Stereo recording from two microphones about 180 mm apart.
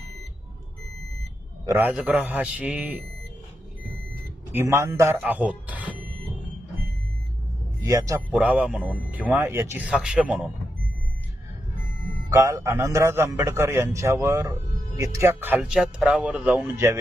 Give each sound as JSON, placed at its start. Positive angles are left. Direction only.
{"t": 1.6, "sound": "a man's voice", "side_deg": -10}
{"t": 4.5, "sound": "a man's voice", "side_deg": -15}
{"t": 7.8, "sound": "a man's voice", "side_deg": -20}
{"t": 8.4, "sound": "a man's voice", "side_deg": -5}
{"t": 12.3, "sound": "a man's voice", "side_deg": -15}